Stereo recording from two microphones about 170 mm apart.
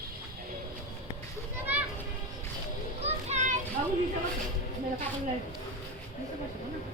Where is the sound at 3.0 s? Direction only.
40° right (ahead or behind).